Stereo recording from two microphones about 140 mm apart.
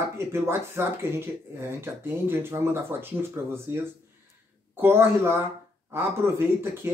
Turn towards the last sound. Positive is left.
turn(degrees=-20)  # may be behind; listen again after turning